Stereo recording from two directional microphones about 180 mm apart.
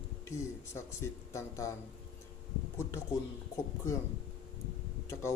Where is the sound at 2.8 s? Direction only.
15° left (ahead or behind).